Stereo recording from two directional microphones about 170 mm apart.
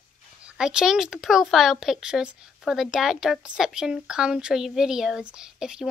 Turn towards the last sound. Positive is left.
turn(degrees=-5)  # may be behind; listen again after turning